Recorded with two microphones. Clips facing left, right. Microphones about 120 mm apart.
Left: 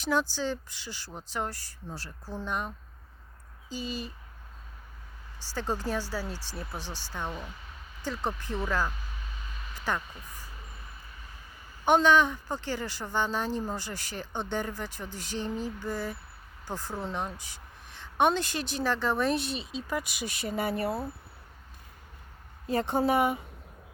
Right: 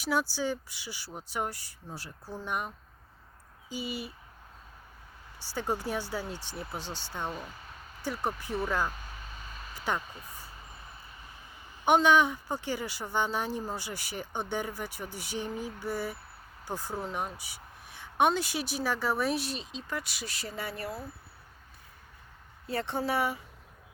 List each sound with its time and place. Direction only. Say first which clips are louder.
0.0 s speech: left 1 dB; 10° right (ahead or behind)
5.4 s speech: even; 15° right (ahead or behind)
11.9 s speech: left 1 dB; 15° right (ahead or behind); by 20.0 s 5° left (ahead or behind)
20.0 s speech: left 4 dB; 15° left (ahead or behind)
22.6 s a woman's voice: left 5 dB; 20° left (ahead or behind)